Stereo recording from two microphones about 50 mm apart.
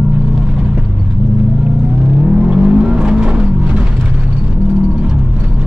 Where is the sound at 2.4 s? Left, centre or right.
Centre.